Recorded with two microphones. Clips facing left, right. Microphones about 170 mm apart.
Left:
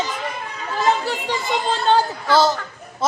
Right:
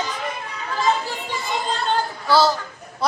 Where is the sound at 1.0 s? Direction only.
70° left (ahead or behind).